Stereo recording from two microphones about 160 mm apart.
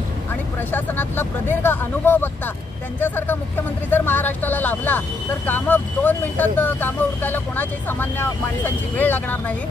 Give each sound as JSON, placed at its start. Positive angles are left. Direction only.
{"t": 0.7, "sound": "speech", "side_deg": 10}